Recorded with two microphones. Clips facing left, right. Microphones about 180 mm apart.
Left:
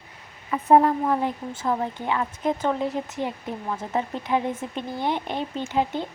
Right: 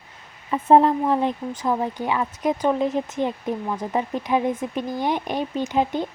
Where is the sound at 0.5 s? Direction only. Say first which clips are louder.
Right 2 dB; 25° right (ahead or behind).